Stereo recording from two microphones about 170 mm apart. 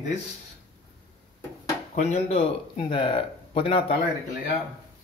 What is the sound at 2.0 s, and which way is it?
Speech, 40° left (ahead or behind).